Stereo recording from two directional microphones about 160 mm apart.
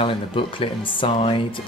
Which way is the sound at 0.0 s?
35° left (ahead or behind).